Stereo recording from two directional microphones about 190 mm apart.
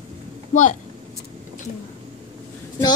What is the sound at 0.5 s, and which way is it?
Speech, 40° left (ahead or behind).